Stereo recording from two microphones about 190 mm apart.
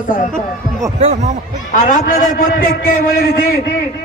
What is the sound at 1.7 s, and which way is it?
A man's voice, 45° left (ahead or behind).